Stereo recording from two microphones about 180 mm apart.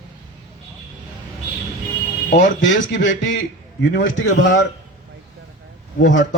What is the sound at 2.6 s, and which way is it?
A man's voice, 90° left.